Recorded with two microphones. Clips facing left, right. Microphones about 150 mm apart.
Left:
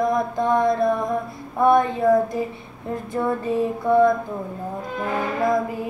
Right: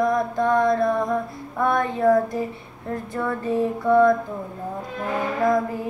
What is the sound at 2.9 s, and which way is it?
Female singing, 15° left (ahead or behind).